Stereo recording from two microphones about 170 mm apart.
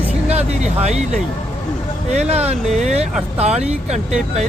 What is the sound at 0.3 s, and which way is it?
Speech, 40° right (ahead or behind).